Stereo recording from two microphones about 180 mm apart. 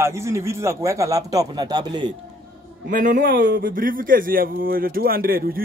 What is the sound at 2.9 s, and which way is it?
A man's voice, 50° right (ahead or behind).